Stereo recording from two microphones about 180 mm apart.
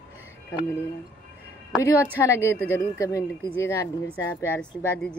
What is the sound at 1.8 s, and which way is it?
A woman's voice, 15° left (ahead or behind).